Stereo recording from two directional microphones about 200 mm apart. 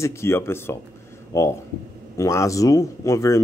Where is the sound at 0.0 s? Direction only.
15° left (ahead or behind).